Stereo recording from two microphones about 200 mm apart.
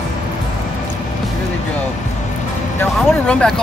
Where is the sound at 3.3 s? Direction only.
5° left (ahead or behind).